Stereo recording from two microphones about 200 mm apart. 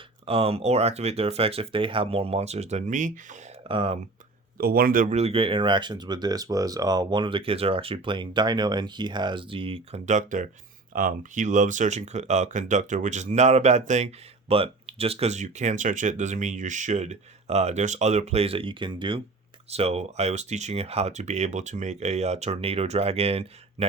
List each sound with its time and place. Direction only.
0.3 s speech: 30° right (ahead or behind)
3.7 s speech: 25° right (ahead or behind)
4.5 s speech: 50° right (ahead or behind); by 23.5 s 30° right (ahead or behind)